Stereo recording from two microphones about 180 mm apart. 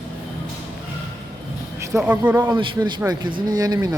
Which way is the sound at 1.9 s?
10° right (ahead or behind).